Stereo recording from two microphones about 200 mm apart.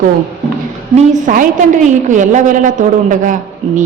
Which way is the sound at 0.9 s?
40° right (ahead or behind).